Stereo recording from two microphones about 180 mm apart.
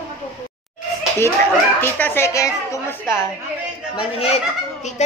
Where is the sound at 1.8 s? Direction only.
10° left (ahead or behind).